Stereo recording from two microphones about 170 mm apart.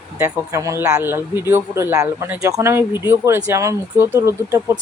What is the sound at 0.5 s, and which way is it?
Speech, 20° right (ahead or behind).